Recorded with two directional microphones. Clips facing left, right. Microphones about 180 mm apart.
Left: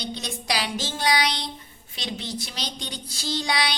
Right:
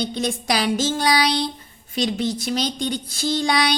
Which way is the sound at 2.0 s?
45° right (ahead or behind).